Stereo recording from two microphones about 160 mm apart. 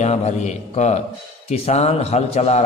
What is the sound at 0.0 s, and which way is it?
A man's voice, 45° left (ahead or behind).